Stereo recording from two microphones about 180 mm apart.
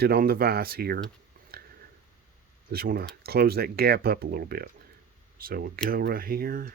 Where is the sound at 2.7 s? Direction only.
55° right (ahead or behind).